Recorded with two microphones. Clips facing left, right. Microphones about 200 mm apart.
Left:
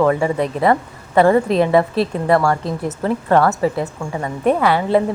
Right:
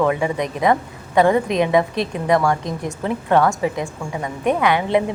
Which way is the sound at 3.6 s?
10° right (ahead or behind).